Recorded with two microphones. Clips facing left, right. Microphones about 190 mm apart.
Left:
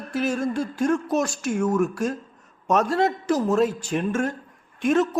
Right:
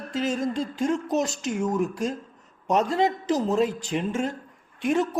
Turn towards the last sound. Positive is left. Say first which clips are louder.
# left 3 dB
turn(degrees=-15)  # may be behind; listen again after turning